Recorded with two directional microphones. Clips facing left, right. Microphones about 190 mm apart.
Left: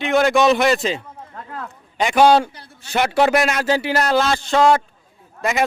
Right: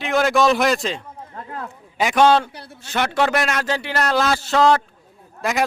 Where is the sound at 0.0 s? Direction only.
Centre (ahead or behind).